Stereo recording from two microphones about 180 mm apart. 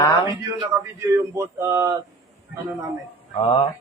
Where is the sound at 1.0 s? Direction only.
20° right (ahead or behind).